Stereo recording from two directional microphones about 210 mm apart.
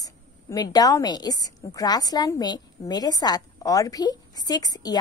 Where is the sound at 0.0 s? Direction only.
15° left (ahead or behind).